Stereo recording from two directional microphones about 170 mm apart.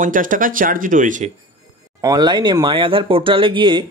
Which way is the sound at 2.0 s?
25° right (ahead or behind).